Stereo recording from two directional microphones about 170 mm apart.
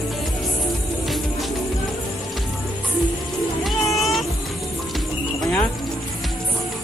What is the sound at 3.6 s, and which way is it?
Vehicle, centre (ahead or behind).